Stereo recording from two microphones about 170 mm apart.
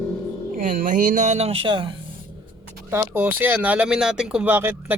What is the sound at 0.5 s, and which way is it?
Speech, 55° right (ahead or behind).